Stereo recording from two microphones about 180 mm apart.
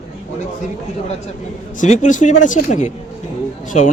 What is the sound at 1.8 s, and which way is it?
Speech, 45° left (ahead or behind).